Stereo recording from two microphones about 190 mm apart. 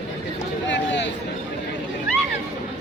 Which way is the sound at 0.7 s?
70° left (ahead or behind).